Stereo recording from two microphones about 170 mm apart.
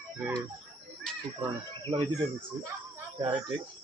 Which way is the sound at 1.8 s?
30° right (ahead or behind).